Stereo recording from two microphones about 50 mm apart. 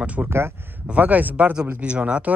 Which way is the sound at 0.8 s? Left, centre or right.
Right.